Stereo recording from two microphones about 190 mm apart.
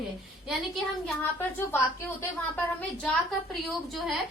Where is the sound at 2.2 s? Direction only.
10° left (ahead or behind).